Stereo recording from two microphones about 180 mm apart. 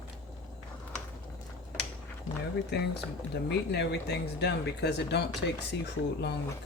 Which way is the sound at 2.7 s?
65° left (ahead or behind).